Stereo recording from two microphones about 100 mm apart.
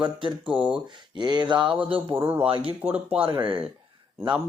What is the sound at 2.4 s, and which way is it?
Speech, 65° right (ahead or behind).